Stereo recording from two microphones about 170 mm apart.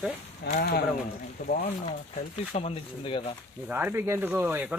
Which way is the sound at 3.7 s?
10° right (ahead or behind).